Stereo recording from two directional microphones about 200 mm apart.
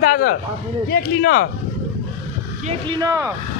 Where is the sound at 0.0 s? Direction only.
45° left (ahead or behind).